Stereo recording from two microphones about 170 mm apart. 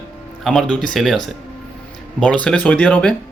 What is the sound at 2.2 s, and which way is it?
Speech, 5° left (ahead or behind).